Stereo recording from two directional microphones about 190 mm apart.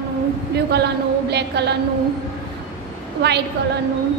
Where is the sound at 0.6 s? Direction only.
60° right (ahead or behind).